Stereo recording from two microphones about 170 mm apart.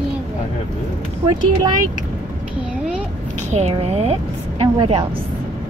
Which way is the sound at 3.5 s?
40° right (ahead or behind).